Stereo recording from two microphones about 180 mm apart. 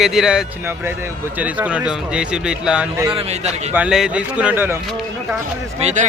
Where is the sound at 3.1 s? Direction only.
35° right (ahead or behind).